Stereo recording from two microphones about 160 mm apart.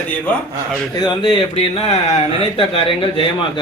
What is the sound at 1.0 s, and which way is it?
Speech, 30° left (ahead or behind).